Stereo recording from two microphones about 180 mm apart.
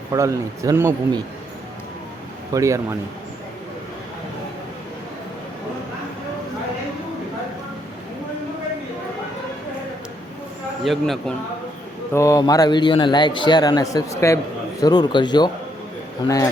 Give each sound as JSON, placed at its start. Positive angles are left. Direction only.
{"t": 0.1, "sound": "a man's voice", "side_deg": -15}
{"t": 2.5, "sound": "a man's voice", "side_deg": -15}
{"t": 10.8, "sound": "speech", "side_deg": 0}
{"t": 12.1, "sound": "a man's voice", "side_deg": 15}